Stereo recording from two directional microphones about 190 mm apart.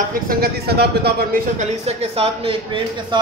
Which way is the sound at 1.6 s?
35° right (ahead or behind).